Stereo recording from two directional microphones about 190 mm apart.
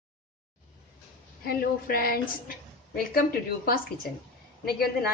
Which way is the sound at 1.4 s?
50° left (ahead or behind).